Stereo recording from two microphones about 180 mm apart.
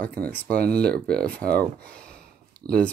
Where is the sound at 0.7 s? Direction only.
60° right (ahead or behind).